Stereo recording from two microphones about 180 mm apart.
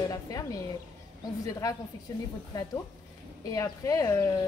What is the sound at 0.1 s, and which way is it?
Speech, 20° left (ahead or behind).